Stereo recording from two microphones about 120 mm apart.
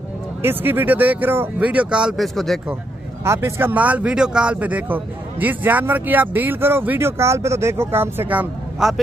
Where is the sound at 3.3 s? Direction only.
25° right (ahead or behind).